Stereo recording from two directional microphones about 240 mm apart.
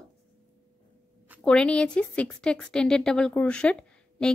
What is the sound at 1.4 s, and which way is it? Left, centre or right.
A woman's voice, centre.